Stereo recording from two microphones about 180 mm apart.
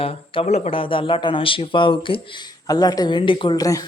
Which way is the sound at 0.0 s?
30° left (ahead or behind).